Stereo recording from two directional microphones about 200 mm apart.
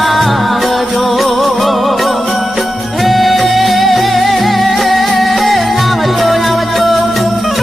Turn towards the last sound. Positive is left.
turn(degrees=0)  # may be behind; listen again after turning